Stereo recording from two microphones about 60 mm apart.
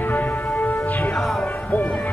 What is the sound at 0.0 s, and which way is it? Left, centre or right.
Music, left.